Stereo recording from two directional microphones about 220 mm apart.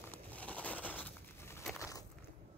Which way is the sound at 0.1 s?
5° left (ahead or behind).